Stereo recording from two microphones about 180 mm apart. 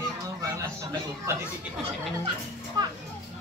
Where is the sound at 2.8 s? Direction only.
25° right (ahead or behind).